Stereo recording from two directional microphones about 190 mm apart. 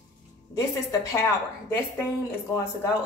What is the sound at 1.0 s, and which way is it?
A woman's voice, 15° left (ahead or behind).